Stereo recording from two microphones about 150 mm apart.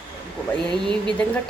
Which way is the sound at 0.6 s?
30° right (ahead or behind).